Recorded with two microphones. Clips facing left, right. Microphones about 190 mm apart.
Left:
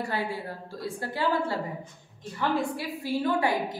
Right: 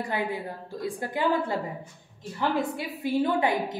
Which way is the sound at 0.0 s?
20° right (ahead or behind).